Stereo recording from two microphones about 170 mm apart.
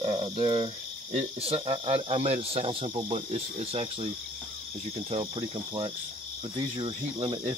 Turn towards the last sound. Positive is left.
turn(degrees=-30)  # may be behind; listen again after turning